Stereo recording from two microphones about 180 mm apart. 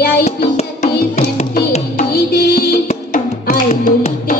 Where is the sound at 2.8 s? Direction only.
45° left (ahead or behind).